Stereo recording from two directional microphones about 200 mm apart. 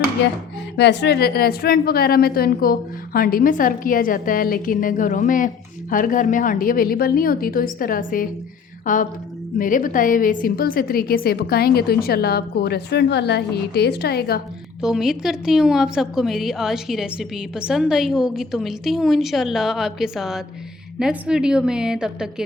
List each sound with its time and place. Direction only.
0.8 s a woman's voice: 60° left (ahead or behind)
14.8 s a woman's voice: 5° right (ahead or behind)